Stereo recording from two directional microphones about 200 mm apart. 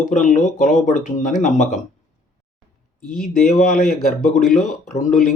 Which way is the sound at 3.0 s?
45° left (ahead or behind).